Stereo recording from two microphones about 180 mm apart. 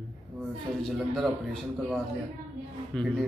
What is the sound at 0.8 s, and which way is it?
A man's voice, centre (ahead or behind).